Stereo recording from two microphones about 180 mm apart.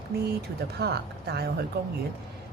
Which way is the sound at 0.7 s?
65° right (ahead or behind).